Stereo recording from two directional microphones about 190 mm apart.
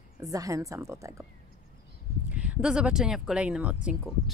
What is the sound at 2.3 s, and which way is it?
Speech, 5° right (ahead or behind).